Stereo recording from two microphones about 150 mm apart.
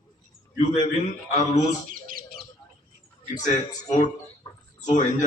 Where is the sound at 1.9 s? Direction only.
70° right (ahead or behind).